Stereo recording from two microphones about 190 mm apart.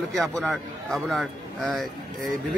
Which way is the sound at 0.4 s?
5° left (ahead or behind).